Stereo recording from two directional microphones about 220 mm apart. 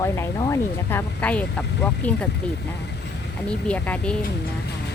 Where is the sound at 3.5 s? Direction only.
5° left (ahead or behind).